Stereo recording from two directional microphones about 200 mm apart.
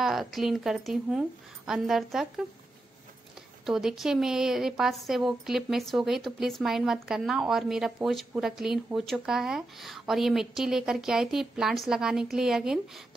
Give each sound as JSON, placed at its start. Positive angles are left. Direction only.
{"t": 0.0, "sound": "a woman's voice", "side_deg": 0}
{"t": 3.6, "sound": "a woman's voice", "side_deg": 0}